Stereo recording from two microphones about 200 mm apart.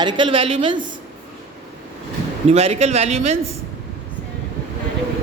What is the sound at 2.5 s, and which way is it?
Speech, 30° right (ahead or behind).